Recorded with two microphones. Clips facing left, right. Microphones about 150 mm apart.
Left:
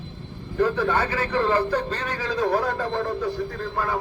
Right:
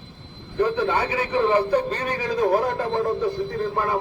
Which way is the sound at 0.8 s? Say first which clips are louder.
Right 1 dB; 20° right (ahead or behind).